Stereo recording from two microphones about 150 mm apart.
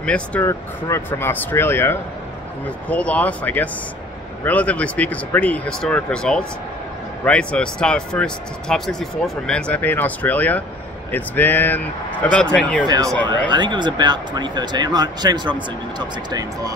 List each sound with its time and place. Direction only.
0.0 s speech: 10° left (ahead or behind)
0.5 s speech: 20° left (ahead or behind)
13.5 s speech: 30° right (ahead or behind)